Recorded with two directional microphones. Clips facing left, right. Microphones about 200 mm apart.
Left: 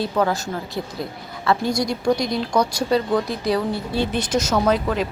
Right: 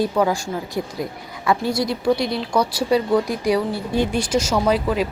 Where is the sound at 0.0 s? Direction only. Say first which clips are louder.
Right 2 dB; 10° right (ahead or behind).